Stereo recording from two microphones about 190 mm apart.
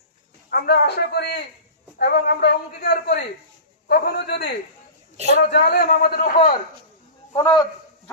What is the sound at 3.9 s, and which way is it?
A man's voice, 55° left (ahead or behind).